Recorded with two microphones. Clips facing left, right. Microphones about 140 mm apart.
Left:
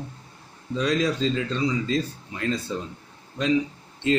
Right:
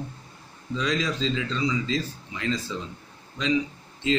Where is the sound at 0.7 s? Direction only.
50° left (ahead or behind).